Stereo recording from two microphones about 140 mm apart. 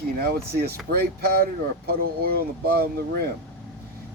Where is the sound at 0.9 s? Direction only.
90° right.